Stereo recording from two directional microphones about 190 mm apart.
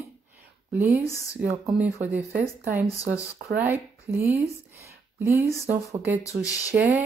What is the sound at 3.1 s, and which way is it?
Speech, 65° right (ahead or behind).